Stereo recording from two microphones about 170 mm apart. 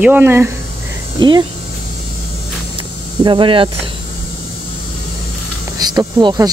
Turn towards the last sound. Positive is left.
turn(degrees=-25)  # may be behind; listen again after turning